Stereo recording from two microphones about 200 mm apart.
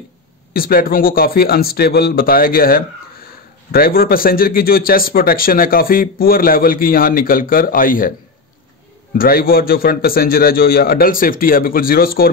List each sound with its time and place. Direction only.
0.5 s a man's voice: 50° left (ahead or behind)
9.2 s a man's voice: 45° left (ahead or behind)